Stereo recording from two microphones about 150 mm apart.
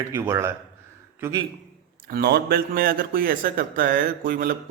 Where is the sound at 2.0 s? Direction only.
90° right; by 4.5 s 70° right (ahead or behind).